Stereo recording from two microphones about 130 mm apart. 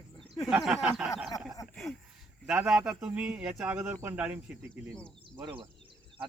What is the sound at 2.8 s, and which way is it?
Speech, 10° right (ahead or behind).